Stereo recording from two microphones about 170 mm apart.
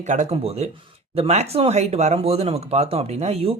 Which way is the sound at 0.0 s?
45° right (ahead or behind).